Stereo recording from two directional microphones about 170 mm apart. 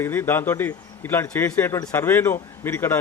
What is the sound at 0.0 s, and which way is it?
A man's voice, 10° left (ahead or behind).